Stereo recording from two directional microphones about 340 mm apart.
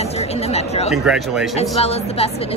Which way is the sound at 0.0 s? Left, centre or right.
Centre.